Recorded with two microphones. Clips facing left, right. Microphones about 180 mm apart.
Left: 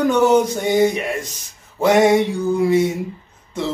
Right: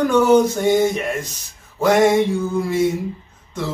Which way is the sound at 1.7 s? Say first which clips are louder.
Left 1 dB; 15° left (ahead or behind).